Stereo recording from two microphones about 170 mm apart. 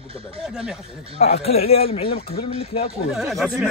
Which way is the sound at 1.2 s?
40° left (ahead or behind).